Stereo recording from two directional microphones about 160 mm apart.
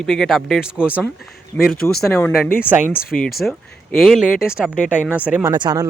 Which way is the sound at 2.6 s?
10° right (ahead or behind).